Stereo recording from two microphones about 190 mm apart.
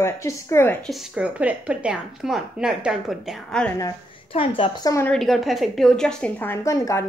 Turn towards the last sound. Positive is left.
turn(degrees=15)  # may be behind; listen again after turning